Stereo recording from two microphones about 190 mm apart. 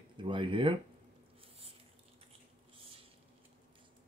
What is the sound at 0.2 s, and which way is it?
Speech, 25° right (ahead or behind).